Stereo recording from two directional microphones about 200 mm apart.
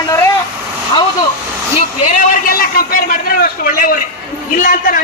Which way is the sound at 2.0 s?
40° left (ahead or behind).